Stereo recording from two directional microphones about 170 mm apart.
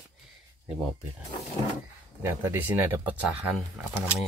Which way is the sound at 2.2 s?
15° right (ahead or behind).